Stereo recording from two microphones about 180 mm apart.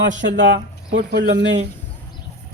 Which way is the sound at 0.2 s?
90° right.